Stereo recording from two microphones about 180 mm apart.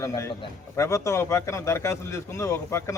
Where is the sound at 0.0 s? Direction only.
15° left (ahead or behind).